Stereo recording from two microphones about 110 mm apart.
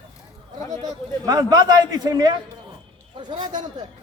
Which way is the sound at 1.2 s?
35° right (ahead or behind).